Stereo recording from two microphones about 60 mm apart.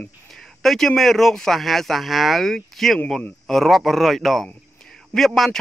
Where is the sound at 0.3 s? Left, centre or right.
Centre.